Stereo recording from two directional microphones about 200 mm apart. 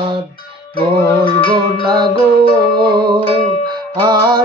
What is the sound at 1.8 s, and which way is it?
Music, 20° right (ahead or behind).